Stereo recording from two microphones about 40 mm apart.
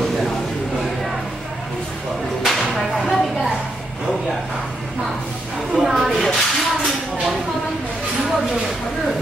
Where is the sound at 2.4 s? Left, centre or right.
Centre.